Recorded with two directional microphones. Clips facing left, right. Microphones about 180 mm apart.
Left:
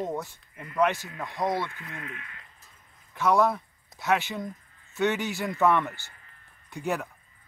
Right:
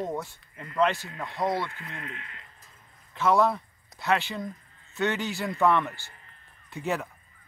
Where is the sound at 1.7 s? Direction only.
25° right (ahead or behind).